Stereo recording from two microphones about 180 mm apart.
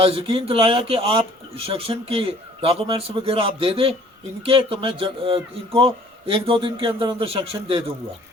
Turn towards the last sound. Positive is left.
turn(degrees=-30)  # may be behind; listen again after turning